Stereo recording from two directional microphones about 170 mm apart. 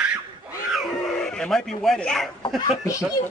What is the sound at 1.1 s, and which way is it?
A man's voice, 5° left (ahead or behind).